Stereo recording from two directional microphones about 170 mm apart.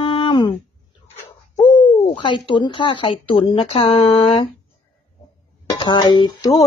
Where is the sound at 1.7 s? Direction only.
30° left (ahead or behind).